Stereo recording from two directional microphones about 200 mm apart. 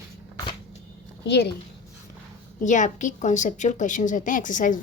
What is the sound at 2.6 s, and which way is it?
A woman's voice, 40° left (ahead or behind).